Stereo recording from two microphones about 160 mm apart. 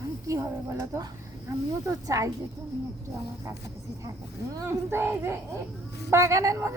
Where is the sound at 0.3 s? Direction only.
20° right (ahead or behind).